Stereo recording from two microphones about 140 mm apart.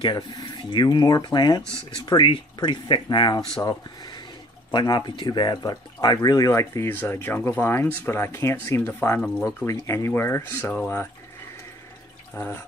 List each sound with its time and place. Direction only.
0.0 s speech: 30° left (ahead or behind)
4.6 s speech: 30° left (ahead or behind)
10.7 s speech: 5° left (ahead or behind)
12.4 s speech: 25° left (ahead or behind)